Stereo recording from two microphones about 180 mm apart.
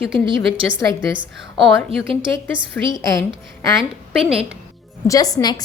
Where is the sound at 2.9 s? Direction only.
20° left (ahead or behind).